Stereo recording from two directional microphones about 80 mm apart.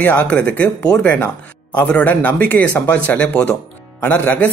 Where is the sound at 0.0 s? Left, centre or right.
Centre.